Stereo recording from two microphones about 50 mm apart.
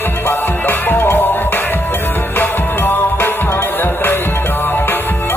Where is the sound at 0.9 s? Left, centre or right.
Left.